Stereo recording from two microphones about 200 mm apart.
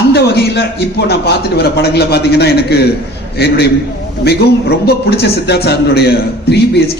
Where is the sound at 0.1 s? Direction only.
55° left (ahead or behind).